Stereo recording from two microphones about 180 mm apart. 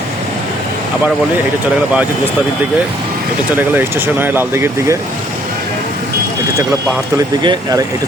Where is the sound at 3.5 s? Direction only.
10° right (ahead or behind).